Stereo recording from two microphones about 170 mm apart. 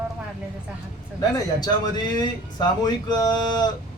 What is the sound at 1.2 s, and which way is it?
A man's voice, 20° left (ahead or behind).